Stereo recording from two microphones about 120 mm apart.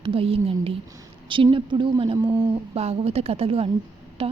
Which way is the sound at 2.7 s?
60° right (ahead or behind).